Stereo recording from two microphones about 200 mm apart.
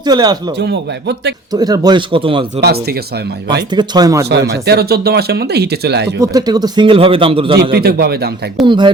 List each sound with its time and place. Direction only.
0.0 s a man's voice: 20° right (ahead or behind)
0.6 s speech: 60° right (ahead or behind)
1.5 s a man's voice: 20° right (ahead or behind)
3.8 s speech: 20° right (ahead or behind)
4.3 s speech: 55° right (ahead or behind)
6.2 s a man's voice: 20° right (ahead or behind)
7.7 s a man's voice: 50° right (ahead or behind)
8.6 s a man's voice: 25° right (ahead or behind)